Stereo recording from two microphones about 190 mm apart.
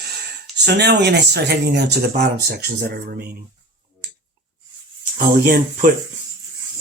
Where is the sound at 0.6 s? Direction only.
60° right (ahead or behind).